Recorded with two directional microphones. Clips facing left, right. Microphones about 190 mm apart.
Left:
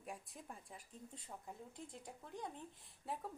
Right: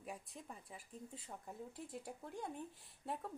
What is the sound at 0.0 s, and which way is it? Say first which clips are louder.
A woman's voice: right 1 dB; centre (ahead or behind).